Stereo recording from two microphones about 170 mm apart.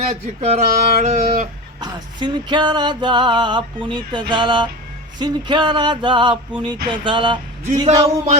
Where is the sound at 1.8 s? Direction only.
25° right (ahead or behind).